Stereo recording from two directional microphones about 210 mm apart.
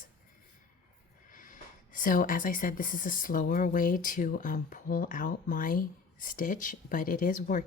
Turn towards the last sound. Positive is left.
turn(degrees=40)  # may be behind; listen again after turning